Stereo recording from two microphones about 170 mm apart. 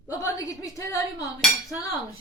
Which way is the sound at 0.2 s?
20° left (ahead or behind).